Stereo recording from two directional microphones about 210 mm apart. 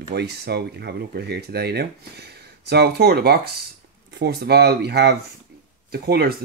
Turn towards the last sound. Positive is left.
turn(degrees=-50)  # may be behind; listen again after turning